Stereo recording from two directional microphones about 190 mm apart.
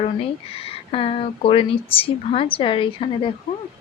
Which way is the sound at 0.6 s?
30° left (ahead or behind).